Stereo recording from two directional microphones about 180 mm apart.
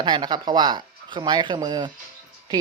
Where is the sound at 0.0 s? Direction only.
25° right (ahead or behind).